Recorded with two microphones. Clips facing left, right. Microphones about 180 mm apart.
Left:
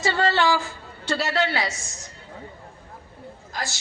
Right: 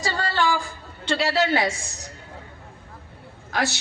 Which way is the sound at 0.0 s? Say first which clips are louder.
Left 4 dB; 20° left (ahead or behind).